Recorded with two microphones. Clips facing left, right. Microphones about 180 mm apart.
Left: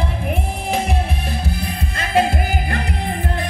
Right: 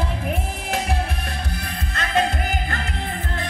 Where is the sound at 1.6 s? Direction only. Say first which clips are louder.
Left 3 dB; 10° left (ahead or behind).